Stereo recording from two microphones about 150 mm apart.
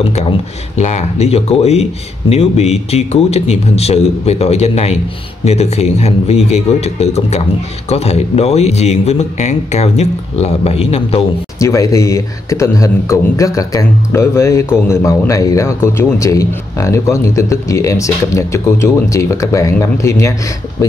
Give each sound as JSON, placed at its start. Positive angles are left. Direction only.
{"t": 0.0, "sound": "speech", "side_deg": 40}
{"t": 11.6, "sound": "a man's voice", "side_deg": 20}